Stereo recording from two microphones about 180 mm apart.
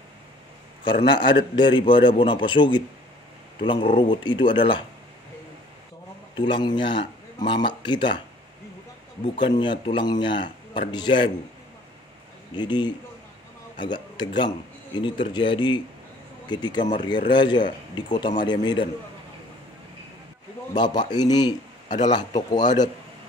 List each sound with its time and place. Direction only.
0.8 s speech: 30° left (ahead or behind)
6.3 s speech: 25° left (ahead or behind)
9.6 s speech: 25° left (ahead or behind)
12.5 s speech: 25° left (ahead or behind)
20.7 s speech: 25° left (ahead or behind)